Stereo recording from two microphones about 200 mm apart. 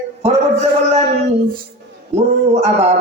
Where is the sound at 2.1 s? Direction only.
30° right (ahead or behind).